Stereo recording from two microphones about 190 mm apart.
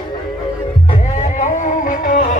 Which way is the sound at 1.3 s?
45° left (ahead or behind).